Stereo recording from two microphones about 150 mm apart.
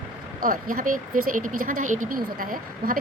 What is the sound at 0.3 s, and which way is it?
Speech, 65° right (ahead or behind).